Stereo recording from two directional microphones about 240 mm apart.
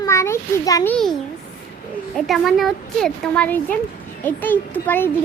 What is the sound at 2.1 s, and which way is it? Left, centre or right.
A child's voice, centre.